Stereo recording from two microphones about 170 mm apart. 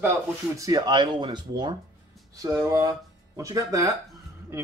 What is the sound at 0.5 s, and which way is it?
Speech, 20° right (ahead or behind).